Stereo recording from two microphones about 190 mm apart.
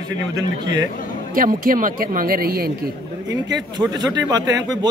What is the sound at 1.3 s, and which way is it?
Speech, 45° right (ahead or behind).